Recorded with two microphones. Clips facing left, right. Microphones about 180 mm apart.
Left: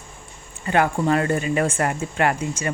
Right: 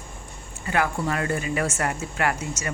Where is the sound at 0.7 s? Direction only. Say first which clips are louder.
Left 6 dB; 30° left (ahead or behind).